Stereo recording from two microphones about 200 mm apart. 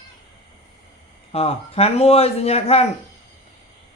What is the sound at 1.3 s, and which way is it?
Speech, 30° left (ahead or behind).